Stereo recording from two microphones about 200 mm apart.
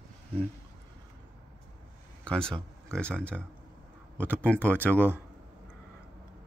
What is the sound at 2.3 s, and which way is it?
Speech, 5° left (ahead or behind).